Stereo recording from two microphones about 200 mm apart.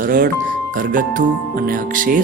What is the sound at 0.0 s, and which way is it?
A man's voice, 45° right (ahead or behind).